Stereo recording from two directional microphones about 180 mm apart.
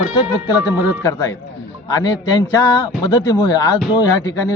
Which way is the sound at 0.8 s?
20° left (ahead or behind).